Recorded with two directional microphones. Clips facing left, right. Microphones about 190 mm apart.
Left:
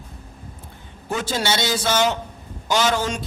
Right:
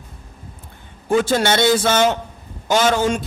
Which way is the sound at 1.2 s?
55° right (ahead or behind).